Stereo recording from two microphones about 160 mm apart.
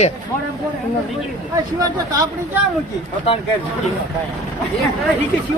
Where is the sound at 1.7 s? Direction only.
20° right (ahead or behind).